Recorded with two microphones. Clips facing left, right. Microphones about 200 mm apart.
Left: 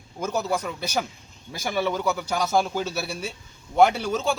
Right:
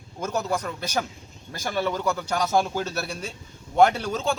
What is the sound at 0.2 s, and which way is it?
A man's voice, 5° left (ahead or behind).